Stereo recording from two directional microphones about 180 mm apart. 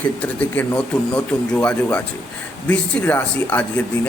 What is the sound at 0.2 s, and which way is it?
Speech, 5° left (ahead or behind).